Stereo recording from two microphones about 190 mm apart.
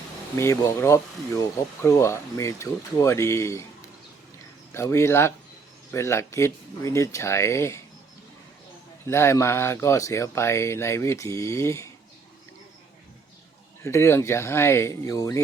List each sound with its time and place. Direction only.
0.3 s speech: 15° left (ahead or behind)
4.7 s speech: 15° left (ahead or behind)
9.0 s speech: 15° left (ahead or behind)
13.8 s speech: 15° left (ahead or behind)